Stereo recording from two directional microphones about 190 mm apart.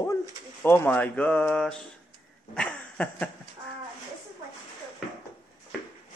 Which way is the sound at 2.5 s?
5° left (ahead or behind).